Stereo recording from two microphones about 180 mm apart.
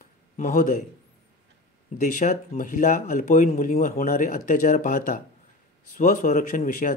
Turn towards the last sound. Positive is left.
turn(degrees=45)  # may be behind; listen again after turning